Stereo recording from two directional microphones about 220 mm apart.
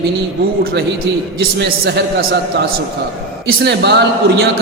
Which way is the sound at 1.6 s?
45° right (ahead or behind).